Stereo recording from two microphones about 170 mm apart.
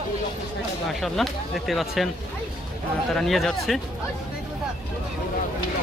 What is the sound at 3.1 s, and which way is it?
Speech, centre (ahead or behind).